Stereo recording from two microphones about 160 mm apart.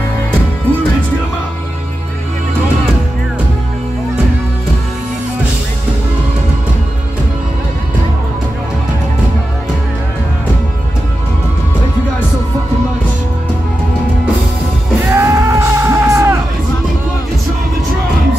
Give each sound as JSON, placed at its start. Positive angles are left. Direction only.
{"t": 15.0, "sound": "music", "side_deg": -15}